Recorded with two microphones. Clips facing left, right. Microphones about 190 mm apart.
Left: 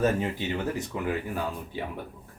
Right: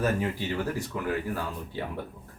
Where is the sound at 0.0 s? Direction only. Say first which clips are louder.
Left 2 dB; 20° left (ahead or behind).